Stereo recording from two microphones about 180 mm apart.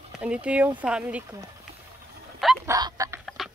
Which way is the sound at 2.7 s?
20° right (ahead or behind).